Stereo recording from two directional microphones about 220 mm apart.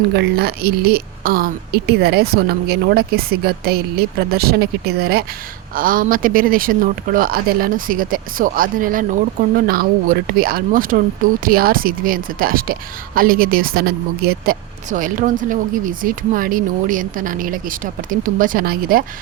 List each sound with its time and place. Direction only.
0.1 s speech: 45° right (ahead or behind)